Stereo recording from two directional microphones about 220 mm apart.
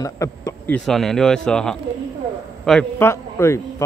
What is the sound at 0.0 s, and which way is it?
A man's voice, 15° left (ahead or behind).